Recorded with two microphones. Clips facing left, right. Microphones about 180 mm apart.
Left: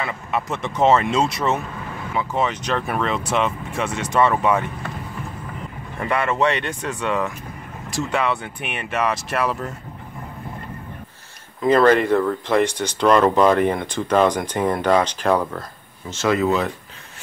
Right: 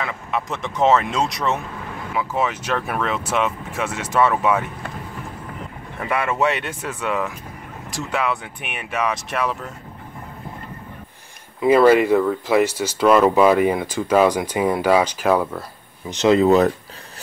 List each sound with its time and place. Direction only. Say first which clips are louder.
0.0 s speech: even; centre (ahead or behind)
5.9 s speech: left 1 dB; 10° right (ahead or behind)
11.6 s speech: right 2 dB; 10° right (ahead or behind)
16.1 s speech: right 5 dB; 20° right (ahead or behind)
16.4 s speech: right 6 dB; 40° right (ahead or behind)